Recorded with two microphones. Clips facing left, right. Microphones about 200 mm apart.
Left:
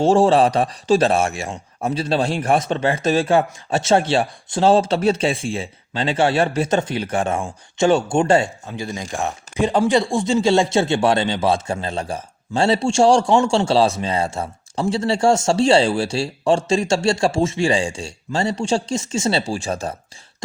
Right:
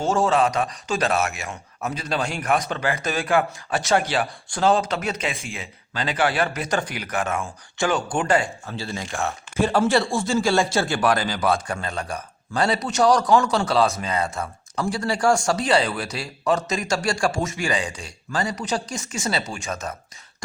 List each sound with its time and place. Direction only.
0.0 s a man's voice: 30° left (ahead or behind)